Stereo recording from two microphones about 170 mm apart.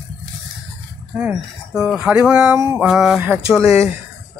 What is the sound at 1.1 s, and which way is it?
Speech, 5° right (ahead or behind).